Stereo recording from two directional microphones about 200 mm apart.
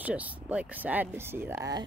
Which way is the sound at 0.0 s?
5° right (ahead or behind).